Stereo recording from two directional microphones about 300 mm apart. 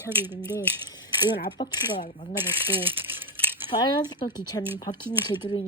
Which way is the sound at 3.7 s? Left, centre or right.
Centre.